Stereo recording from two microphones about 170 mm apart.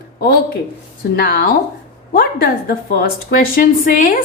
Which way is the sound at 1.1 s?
60° left (ahead or behind).